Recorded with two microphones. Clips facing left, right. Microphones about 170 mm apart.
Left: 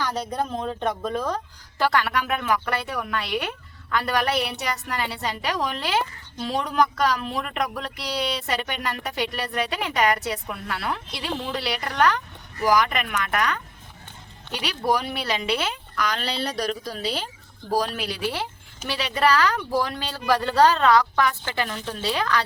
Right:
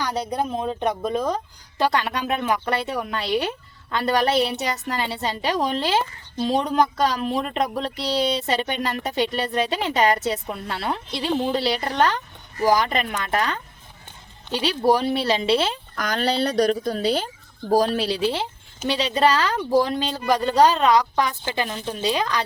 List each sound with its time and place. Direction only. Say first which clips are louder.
0.0 s speech: right 2 dB; 15° right (ahead or behind); by 15.8 s 30° right (ahead or behind)
16.0 s a woman's voice: right 5 dB; 45° right (ahead or behind); by 22.4 s 20° right (ahead or behind)